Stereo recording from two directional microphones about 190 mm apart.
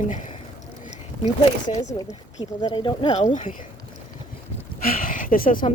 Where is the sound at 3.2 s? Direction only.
40° left (ahead or behind).